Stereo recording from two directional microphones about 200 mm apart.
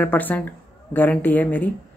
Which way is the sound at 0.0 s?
10° left (ahead or behind).